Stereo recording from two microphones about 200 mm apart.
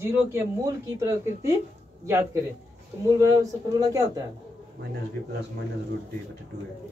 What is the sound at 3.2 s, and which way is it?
Speech, 15° right (ahead or behind).